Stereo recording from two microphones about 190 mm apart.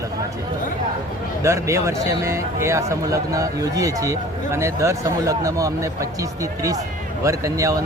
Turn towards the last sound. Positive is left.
turn(degrees=-15)  # may be behind; listen again after turning